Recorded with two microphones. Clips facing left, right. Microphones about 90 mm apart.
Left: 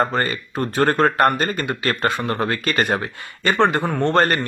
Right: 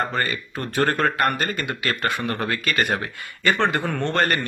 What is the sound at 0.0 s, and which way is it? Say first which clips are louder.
Speech: left 4 dB; 35° left (ahead or behind).